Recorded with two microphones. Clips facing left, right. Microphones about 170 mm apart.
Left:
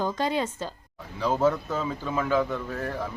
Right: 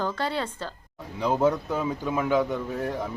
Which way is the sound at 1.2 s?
15° right (ahead or behind).